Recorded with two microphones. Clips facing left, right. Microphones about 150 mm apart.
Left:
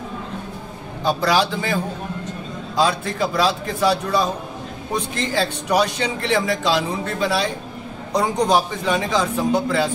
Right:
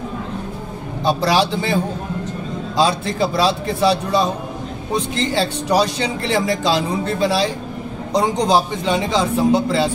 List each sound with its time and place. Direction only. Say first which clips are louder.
1.0 s a man's voice: right 2 dB; 30° right (ahead or behind)
3.2 s a man's voice: right 2 dB; 30° right (ahead or behind)